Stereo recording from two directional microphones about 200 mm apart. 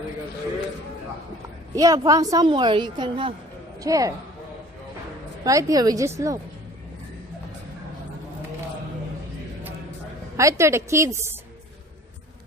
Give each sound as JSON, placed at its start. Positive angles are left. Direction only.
{"t": 1.8, "sound": "a woman's voice", "side_deg": -15}
{"t": 5.4, "sound": "a woman's voice", "side_deg": -15}
{"t": 10.3, "sound": "a woman's voice", "side_deg": -15}